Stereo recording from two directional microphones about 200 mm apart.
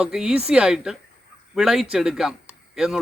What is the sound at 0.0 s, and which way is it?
Speech, 5° right (ahead or behind).